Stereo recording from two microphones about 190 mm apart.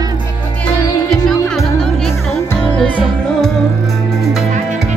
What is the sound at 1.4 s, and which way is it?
Music, 15° left (ahead or behind).